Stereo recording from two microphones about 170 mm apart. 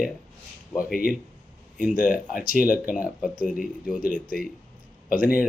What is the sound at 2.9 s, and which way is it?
Speech, 5° right (ahead or behind).